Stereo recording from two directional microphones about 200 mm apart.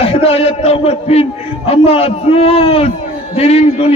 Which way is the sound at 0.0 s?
30° left (ahead or behind).